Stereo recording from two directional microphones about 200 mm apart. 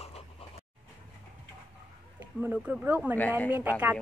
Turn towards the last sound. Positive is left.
turn(degrees=-10)  # may be behind; listen again after turning